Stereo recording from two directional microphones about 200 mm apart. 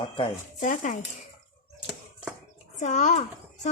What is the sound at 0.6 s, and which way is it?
Speech, 40° left (ahead or behind).